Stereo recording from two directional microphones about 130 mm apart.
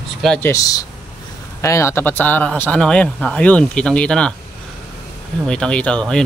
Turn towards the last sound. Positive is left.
turn(degrees=5)  # may be behind; listen again after turning